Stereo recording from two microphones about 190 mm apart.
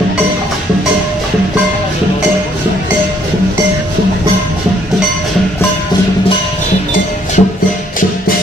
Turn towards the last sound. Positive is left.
turn(degrees=50)  # may be behind; listen again after turning